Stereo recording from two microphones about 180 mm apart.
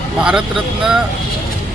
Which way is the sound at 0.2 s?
5° right (ahead or behind).